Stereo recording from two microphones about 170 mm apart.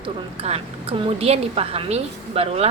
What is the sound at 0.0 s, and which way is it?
A woman's voice, 35° right (ahead or behind).